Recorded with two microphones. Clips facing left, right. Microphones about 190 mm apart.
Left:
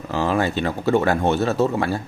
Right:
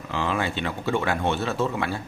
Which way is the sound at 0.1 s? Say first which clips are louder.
Left 6 dB; 40° left (ahead or behind).